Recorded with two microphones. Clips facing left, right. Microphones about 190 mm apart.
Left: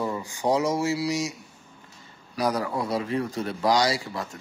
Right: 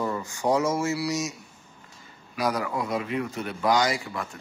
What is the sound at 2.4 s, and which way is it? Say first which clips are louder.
Speech: left 1 dB; 30° left (ahead or behind).